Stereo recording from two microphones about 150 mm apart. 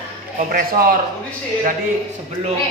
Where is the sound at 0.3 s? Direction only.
65° right (ahead or behind).